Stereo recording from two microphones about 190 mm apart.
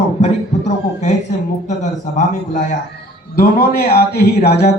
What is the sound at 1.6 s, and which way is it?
A man's voice, 40° left (ahead or behind).